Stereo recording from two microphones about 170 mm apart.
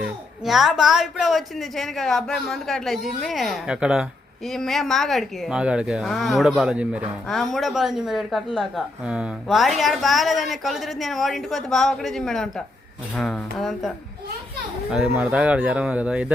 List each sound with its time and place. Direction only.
0.0 s a woman's voice: centre (ahead or behind)